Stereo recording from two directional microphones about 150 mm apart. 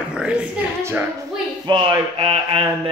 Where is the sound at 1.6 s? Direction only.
30° right (ahead or behind).